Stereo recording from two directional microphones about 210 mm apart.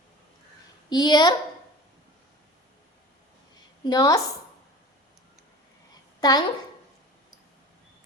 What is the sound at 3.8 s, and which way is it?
Speech, 20° left (ahead or behind).